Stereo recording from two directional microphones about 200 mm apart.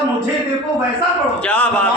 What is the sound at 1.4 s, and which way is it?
Speech, 5° left (ahead or behind).